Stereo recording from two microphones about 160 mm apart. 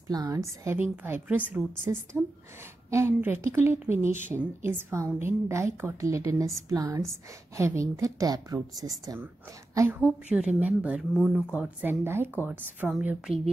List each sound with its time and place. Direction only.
0.1 s a woman's voice: 20° right (ahead or behind)
9.8 s a woman's voice: 10° right (ahead or behind)